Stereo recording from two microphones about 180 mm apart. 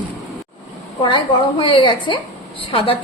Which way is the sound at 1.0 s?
30° left (ahead or behind).